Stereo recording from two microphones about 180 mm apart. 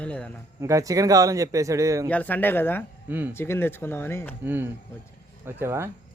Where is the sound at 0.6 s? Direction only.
15° right (ahead or behind).